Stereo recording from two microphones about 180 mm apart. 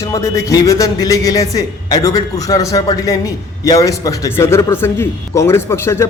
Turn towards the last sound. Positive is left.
turn(degrees=15)  # may be behind; listen again after turning